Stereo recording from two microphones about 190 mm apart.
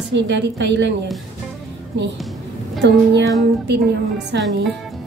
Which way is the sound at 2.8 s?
65° right (ahead or behind).